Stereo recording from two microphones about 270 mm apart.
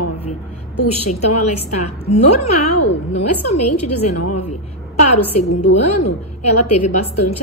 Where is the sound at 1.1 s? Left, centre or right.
Left.